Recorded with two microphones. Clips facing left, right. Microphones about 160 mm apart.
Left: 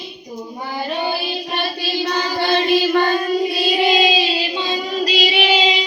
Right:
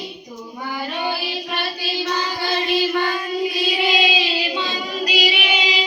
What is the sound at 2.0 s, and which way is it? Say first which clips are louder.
Child singing: left 4 dB; 50° left (ahead or behind).